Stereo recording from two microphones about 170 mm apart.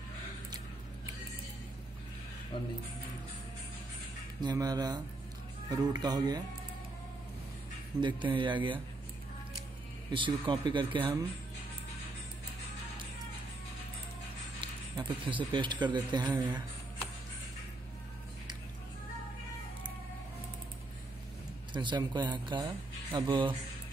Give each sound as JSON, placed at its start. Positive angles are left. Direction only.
{"t": 2.5, "sound": "speech", "side_deg": 30}
{"t": 4.4, "sound": "speech", "side_deg": -25}
{"t": 8.0, "sound": "speech", "side_deg": -30}
{"t": 10.1, "sound": "speech", "side_deg": -30}
{"t": 14.6, "sound": "a sound", "side_deg": -30}
{"t": 15.5, "sound": "speech", "side_deg": -25}
{"t": 21.7, "sound": "speech", "side_deg": -25}